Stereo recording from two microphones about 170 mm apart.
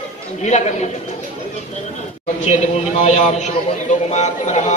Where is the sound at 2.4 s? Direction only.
45° left (ahead or behind).